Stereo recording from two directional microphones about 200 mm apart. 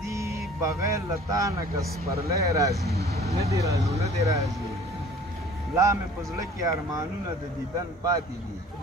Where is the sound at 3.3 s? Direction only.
15° right (ahead or behind).